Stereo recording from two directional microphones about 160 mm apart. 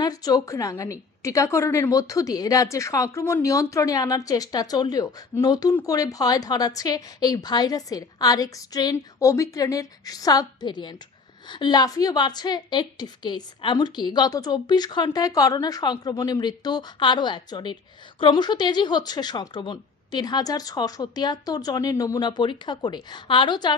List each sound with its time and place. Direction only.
0.0 s a woman's voice: 25° left (ahead or behind)